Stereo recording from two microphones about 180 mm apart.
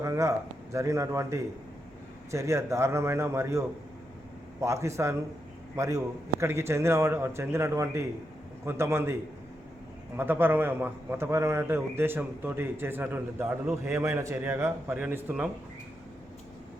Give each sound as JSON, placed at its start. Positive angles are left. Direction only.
{"t": 0.0, "sound": "a man's voice", "side_deg": -15}
{"t": 4.6, "sound": "a man's voice", "side_deg": -15}
{"t": 10.2, "sound": "a man's voice", "side_deg": -10}